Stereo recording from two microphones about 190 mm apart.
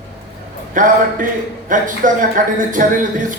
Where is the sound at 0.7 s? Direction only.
45° right (ahead or behind).